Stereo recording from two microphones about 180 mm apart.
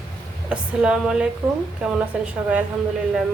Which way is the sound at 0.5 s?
5° right (ahead or behind).